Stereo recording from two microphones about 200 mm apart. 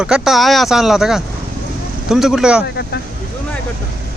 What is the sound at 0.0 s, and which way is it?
Speech, centre (ahead or behind).